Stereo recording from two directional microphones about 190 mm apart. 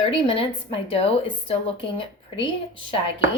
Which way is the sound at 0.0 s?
30° left (ahead or behind).